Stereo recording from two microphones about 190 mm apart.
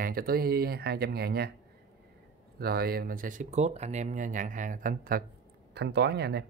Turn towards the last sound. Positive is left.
turn(degrees=-60)  # may be behind; listen again after turning